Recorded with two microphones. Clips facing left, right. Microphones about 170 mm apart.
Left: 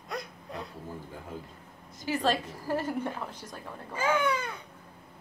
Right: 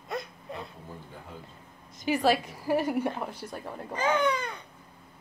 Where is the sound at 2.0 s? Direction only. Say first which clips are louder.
Right 4 dB; 15° right (ahead or behind).